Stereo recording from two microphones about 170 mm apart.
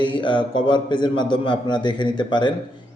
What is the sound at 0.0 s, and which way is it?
A man's voice, 30° left (ahead or behind).